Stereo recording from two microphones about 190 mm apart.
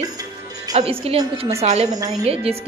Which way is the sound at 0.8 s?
30° right (ahead or behind).